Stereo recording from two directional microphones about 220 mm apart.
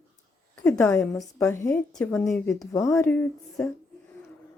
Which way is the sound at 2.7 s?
15° left (ahead or behind).